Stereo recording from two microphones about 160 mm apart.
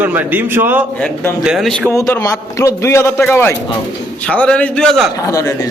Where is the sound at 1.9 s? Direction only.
20° left (ahead or behind); by 5.1 s 5° left (ahead or behind).